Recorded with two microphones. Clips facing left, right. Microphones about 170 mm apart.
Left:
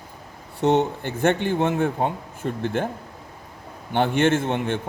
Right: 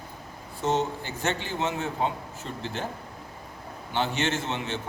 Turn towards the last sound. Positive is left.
turn(degrees=50)  # may be behind; listen again after turning